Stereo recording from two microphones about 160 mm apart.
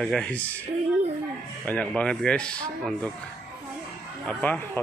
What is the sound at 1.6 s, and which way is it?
Speech, 10° left (ahead or behind).